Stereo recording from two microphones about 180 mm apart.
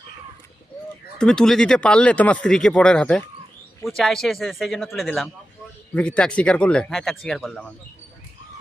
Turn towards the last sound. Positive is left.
turn(degrees=5)  # may be behind; listen again after turning